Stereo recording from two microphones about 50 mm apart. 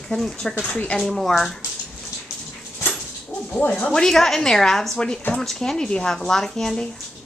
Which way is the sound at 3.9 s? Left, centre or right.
Centre.